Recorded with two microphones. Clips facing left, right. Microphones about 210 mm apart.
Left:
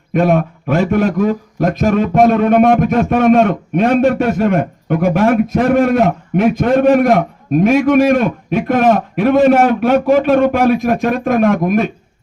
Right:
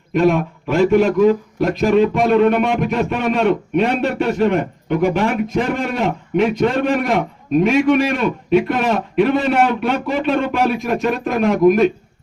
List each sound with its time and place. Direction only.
0.1 s a man's voice: 55° left (ahead or behind)